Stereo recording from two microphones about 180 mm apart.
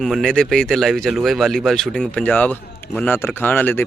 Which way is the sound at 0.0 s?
Centre (ahead or behind).